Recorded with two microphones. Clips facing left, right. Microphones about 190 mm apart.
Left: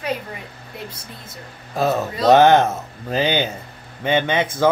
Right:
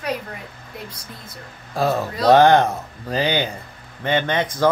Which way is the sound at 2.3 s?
20° left (ahead or behind).